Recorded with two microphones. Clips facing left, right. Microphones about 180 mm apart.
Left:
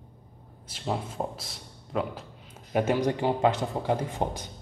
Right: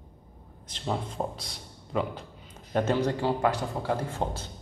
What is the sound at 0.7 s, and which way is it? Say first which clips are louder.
A man's voice: even; 5° left (ahead or behind).